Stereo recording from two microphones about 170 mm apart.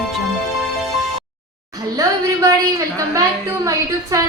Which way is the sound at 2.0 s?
20° right (ahead or behind).